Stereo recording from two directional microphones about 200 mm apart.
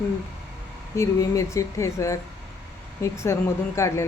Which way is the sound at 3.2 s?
15° left (ahead or behind).